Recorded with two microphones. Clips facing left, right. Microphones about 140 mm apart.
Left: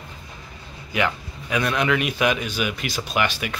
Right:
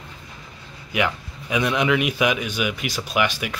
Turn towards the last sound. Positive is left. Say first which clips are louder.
# right 1 dB
turn(degrees=-5)  # may be behind; listen again after turning